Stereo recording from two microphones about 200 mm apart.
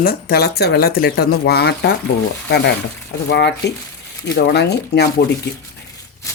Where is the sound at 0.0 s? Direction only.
50° left (ahead or behind).